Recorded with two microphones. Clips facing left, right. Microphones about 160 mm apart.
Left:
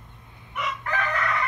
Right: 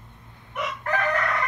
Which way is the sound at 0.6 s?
45° right (ahead or behind).